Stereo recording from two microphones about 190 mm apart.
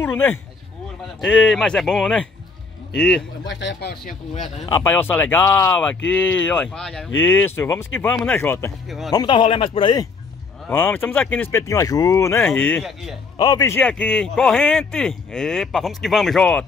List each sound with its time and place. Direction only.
0.0 s speech: 10° left (ahead or behind)
3.4 s speech: 70° left (ahead or behind)
4.7 s speech: 10° left (ahead or behind)
8.8 s speech: centre (ahead or behind)
9.1 s speech: 25° left (ahead or behind)
10.7 s speech: 10° left (ahead or behind)